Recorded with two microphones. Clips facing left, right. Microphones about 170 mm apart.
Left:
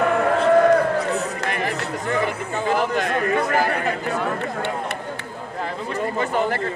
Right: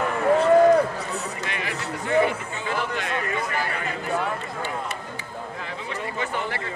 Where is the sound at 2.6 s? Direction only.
45° left (ahead or behind).